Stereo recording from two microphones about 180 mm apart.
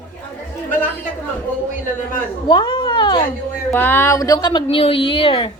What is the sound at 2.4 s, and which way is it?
Speech, 25° left (ahead or behind).